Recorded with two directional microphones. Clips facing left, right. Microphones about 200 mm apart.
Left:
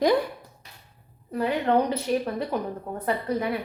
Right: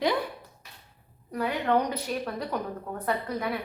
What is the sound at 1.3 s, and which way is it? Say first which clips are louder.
A woman's voice: left 3 dB; 25° left (ahead or behind).